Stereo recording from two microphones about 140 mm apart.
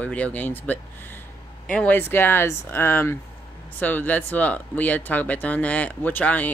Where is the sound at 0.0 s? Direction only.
10° left (ahead or behind).